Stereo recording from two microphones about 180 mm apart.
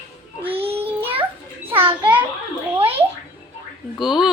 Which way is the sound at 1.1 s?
30° right (ahead or behind).